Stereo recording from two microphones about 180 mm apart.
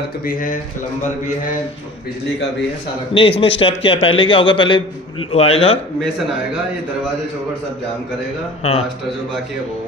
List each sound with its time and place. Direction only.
0.3 s a man's voice: 50° left (ahead or behind)
3.2 s speech: 30° left (ahead or behind)